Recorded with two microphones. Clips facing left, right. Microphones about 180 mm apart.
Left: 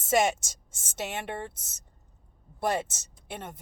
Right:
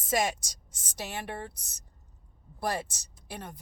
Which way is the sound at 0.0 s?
25° left (ahead or behind).